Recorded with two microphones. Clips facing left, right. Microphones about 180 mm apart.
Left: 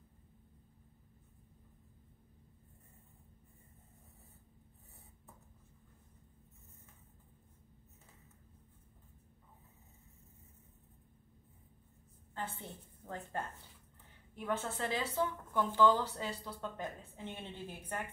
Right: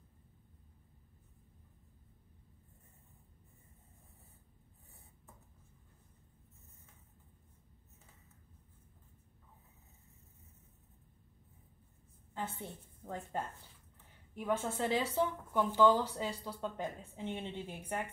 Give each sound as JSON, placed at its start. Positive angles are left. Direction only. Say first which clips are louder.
{"t": 13.0, "sound": "a woman's voice", "louder": "right 2 dB", "side_deg": -10}